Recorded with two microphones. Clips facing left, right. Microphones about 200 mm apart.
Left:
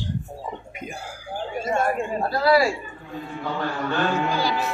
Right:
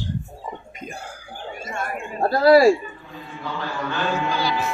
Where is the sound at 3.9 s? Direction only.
50° left (ahead or behind).